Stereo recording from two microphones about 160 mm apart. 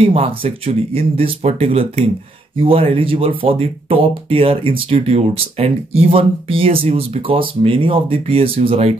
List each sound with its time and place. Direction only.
0.0 s speech: 35° right (ahead or behind)